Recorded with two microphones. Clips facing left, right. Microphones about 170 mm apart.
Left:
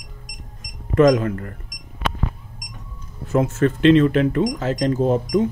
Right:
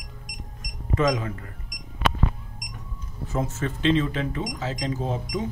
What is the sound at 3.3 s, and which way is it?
Speech, 75° left (ahead or behind).